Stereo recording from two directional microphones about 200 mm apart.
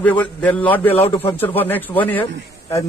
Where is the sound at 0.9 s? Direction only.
30° left (ahead or behind).